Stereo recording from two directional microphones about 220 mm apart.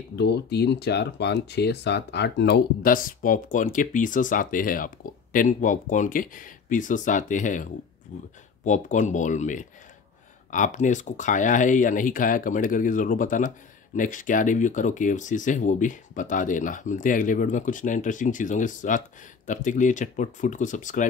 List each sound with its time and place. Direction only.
0.1 s speech: 50° left (ahead or behind)